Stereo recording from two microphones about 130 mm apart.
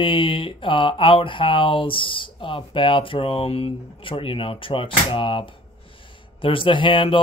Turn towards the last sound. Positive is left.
turn(degrees=40)  # may be behind; listen again after turning